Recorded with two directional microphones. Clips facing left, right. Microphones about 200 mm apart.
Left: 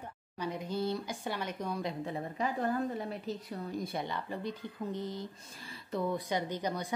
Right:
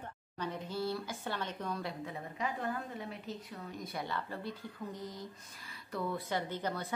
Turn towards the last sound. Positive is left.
turn(degrees=15)  # may be behind; listen again after turning